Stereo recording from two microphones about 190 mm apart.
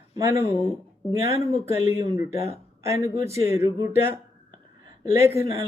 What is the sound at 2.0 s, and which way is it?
Speech, 15° right (ahead or behind).